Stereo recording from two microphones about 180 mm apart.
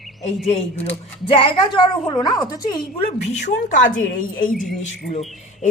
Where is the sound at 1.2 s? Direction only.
30° left (ahead or behind).